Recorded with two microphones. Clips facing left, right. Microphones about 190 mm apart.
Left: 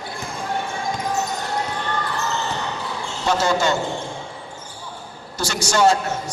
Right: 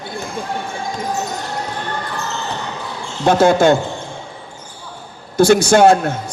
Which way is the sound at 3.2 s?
55° right (ahead or behind).